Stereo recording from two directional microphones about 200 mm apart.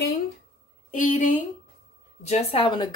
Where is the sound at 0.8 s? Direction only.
40° left (ahead or behind).